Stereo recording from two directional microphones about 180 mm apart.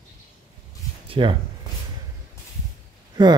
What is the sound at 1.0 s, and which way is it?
Speech, 30° right (ahead or behind).